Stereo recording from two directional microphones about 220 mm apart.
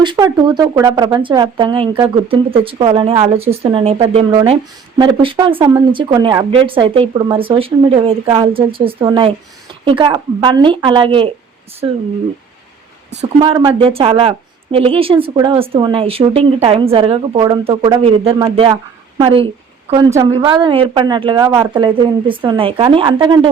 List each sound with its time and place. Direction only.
0.0 s a woman's voice: 20° right (ahead or behind)
13.4 s a woman's voice: 20° right (ahead or behind)
20.1 s a woman's voice: 15° right (ahead or behind)